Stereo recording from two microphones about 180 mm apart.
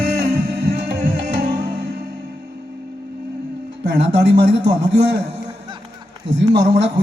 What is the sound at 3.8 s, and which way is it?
A man's voice, 70° right (ahead or behind).